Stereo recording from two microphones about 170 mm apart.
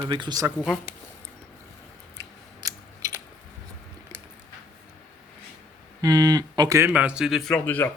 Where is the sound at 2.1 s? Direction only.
20° right (ahead or behind).